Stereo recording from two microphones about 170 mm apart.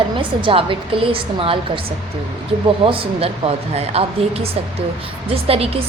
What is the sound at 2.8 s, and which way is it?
A woman's voice, 30° right (ahead or behind).